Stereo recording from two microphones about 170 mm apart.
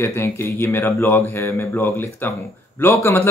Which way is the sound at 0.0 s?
15° left (ahead or behind).